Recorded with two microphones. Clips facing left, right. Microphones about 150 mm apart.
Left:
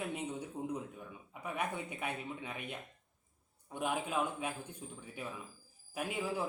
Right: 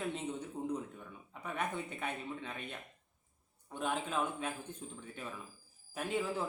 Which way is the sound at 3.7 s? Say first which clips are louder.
Left 1 dB; 10° left (ahead or behind).